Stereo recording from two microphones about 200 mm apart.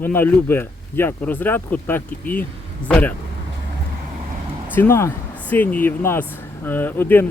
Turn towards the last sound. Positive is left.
turn(degrees=10)  # may be behind; listen again after turning